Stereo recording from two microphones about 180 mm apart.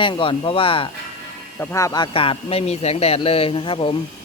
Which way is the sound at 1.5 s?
15° left (ahead or behind).